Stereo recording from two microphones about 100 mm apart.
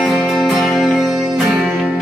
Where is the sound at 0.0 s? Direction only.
5° left (ahead or behind).